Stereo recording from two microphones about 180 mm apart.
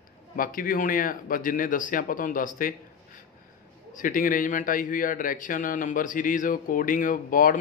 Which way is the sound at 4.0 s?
50° left (ahead or behind).